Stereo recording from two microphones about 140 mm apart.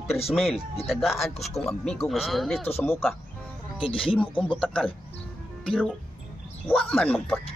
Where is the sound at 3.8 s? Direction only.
40° left (ahead or behind).